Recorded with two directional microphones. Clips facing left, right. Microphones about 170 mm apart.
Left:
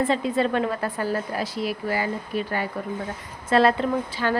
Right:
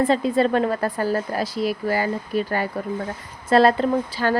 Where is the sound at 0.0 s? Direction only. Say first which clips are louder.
Right 4 dB; 35° right (ahead or behind).